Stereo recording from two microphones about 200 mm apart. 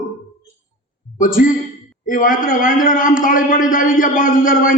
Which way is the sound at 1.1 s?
40° left (ahead or behind).